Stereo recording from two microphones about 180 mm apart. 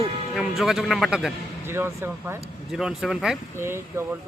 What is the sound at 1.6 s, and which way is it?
Speech, 15° right (ahead or behind).